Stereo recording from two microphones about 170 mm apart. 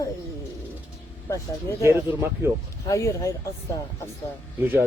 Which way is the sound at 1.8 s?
15° right (ahead or behind).